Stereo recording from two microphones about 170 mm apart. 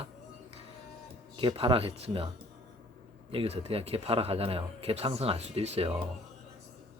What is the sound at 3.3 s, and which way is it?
Speech, 35° right (ahead or behind).